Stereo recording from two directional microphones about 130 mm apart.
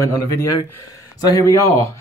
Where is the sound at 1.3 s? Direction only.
25° left (ahead or behind).